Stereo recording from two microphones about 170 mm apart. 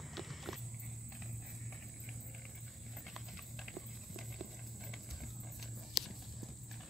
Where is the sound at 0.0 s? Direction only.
Centre (ahead or behind).